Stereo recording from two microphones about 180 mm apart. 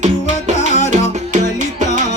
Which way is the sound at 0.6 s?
40° left (ahead or behind).